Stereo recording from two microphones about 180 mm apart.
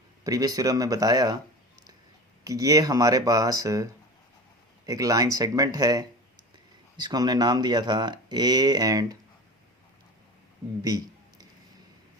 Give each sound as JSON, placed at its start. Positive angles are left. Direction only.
{"t": 0.3, "sound": "speech", "side_deg": -20}
{"t": 2.4, "sound": "speech", "side_deg": -20}
{"t": 4.9, "sound": "speech", "side_deg": -20}
{"t": 10.8, "sound": "a sound", "side_deg": -20}